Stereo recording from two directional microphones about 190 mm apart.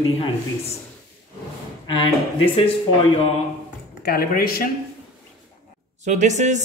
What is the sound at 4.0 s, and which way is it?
Speech, 50° left (ahead or behind).